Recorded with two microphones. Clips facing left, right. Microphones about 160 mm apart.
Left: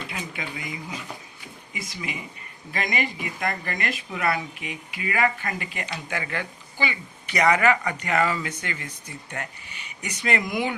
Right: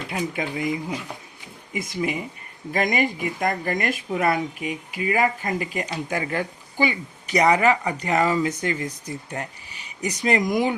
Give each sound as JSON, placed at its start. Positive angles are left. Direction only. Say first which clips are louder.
{"t": 0.1, "sound": "speech", "louder": "right 7 dB", "side_deg": -40}